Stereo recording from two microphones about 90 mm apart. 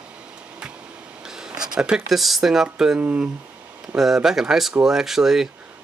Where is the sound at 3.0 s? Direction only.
20° right (ahead or behind).